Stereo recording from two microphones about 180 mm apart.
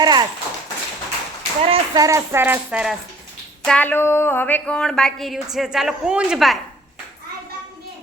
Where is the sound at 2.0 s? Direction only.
15° right (ahead or behind).